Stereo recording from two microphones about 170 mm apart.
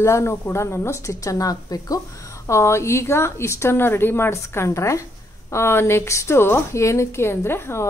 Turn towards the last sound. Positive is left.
turn(degrees=15)  # may be behind; listen again after turning